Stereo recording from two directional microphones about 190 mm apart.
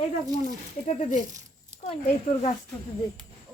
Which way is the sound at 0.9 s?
40° left (ahead or behind).